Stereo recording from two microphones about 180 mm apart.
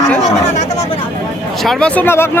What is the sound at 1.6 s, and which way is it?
Speech, 5° left (ahead or behind).